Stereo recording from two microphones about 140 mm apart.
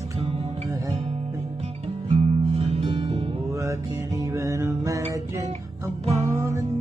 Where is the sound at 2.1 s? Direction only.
50° right (ahead or behind).